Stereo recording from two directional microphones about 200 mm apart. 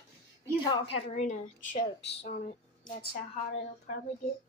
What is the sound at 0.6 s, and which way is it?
A woman's voice, 25° left (ahead or behind).